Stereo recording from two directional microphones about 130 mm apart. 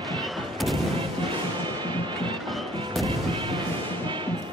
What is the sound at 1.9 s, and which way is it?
Music, 35° right (ahead or behind).